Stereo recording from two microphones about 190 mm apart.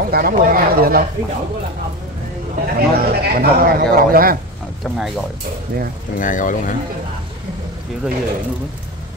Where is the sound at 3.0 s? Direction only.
55° right (ahead or behind).